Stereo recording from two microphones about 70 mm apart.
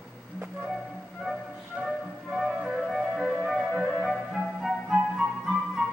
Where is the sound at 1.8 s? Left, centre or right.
Centre.